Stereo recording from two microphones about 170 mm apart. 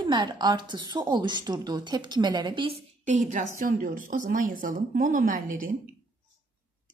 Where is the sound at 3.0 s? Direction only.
45° right (ahead or behind).